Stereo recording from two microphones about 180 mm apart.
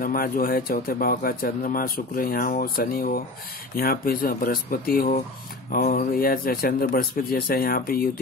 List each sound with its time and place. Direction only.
0.0 s speech: 50° left (ahead or behind)